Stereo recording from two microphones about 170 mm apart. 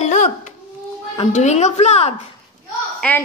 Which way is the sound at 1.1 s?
40° left (ahead or behind).